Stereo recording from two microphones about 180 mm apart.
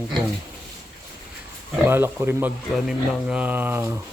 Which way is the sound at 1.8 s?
10° right (ahead or behind).